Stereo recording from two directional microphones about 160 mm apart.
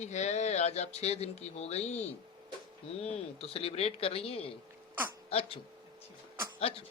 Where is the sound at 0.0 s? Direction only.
45° left (ahead or behind).